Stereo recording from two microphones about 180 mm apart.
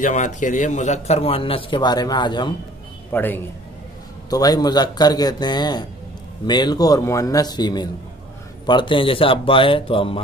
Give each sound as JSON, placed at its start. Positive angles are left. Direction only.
{"t": 0.0, "sound": "a man's voice", "side_deg": 45}
{"t": 3.1, "sound": "a man's voice", "side_deg": 10}